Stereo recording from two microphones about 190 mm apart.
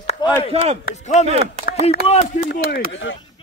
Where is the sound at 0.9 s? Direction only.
40° left (ahead or behind).